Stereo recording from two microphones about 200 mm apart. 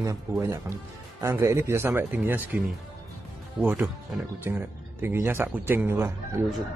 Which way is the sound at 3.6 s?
10° right (ahead or behind).